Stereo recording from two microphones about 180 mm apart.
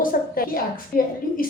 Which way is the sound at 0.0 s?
50° left (ahead or behind).